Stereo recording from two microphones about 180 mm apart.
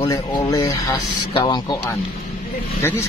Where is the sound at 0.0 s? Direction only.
25° left (ahead or behind).